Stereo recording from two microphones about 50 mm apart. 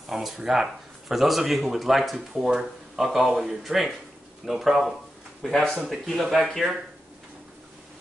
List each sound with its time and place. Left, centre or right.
0.0 s speech: centre